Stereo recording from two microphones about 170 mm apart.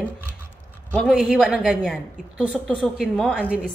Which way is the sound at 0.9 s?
Centre (ahead or behind).